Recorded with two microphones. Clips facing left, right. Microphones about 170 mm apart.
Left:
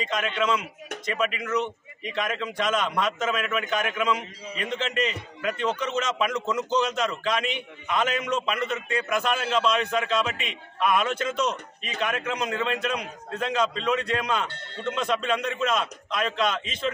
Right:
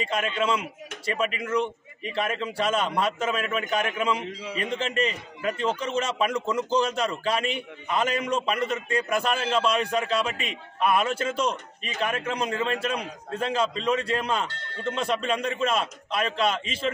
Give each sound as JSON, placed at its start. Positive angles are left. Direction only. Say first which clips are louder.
{"t": 0.0, "sound": "a man's voice", "louder": "even", "side_deg": -35}
{"t": 6.4, "sound": "a man's voice", "louder": "right 1 dB", "side_deg": -10}
{"t": 6.8, "sound": "a man's voice", "louder": "even", "side_deg": -30}